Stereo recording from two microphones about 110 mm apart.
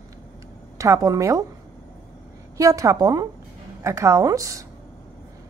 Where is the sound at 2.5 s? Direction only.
30° right (ahead or behind).